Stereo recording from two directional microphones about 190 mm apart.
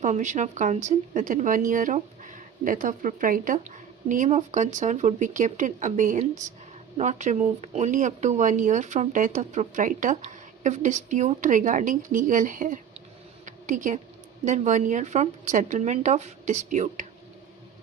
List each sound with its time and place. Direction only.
0.0 s speech: 40° right (ahead or behind)
13.4 s a sound: 40° right (ahead or behind)
14.4 s speech: 40° right (ahead or behind)